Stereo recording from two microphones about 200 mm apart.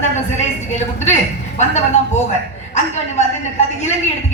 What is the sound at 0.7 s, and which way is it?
A woman's voice, 35° left (ahead or behind).